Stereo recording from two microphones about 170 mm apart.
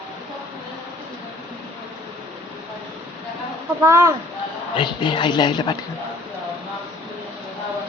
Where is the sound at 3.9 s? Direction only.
15° right (ahead or behind).